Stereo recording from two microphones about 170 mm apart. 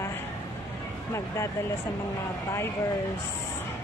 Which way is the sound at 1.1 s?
15° left (ahead or behind).